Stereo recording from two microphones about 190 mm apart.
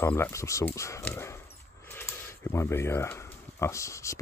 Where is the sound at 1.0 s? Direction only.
10° left (ahead or behind).